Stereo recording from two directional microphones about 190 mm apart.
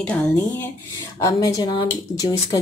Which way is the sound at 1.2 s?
20° left (ahead or behind).